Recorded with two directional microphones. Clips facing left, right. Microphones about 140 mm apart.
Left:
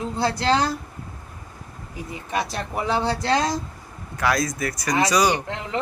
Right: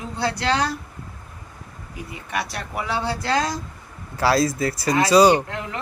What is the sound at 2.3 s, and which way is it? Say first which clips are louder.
Speech: left 2 dB; 25° left (ahead or behind).